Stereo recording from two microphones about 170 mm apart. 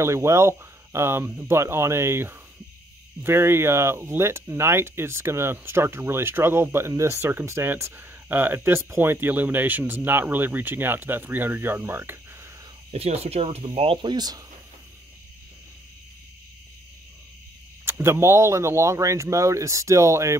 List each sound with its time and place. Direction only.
0.0 s speech: 15° right (ahead or behind)
12.9 s speech: 35° right (ahead or behind)
17.8 s speech: 15° right (ahead or behind)